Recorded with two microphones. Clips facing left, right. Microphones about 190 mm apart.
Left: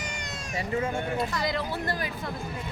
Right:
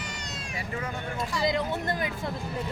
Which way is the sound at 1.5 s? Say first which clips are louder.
Right 2 dB; 20° right (ahead or behind).